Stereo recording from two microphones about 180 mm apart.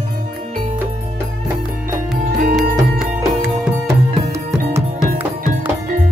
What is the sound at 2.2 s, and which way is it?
Music, 55° right (ahead or behind).